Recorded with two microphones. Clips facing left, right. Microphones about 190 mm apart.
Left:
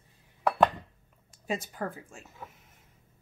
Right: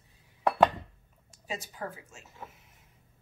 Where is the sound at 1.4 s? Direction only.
55° left (ahead or behind).